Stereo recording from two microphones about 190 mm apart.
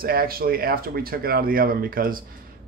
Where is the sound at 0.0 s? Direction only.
50° right (ahead or behind).